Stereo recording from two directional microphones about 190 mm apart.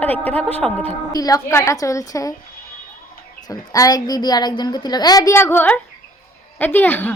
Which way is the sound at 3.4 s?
20° left (ahead or behind).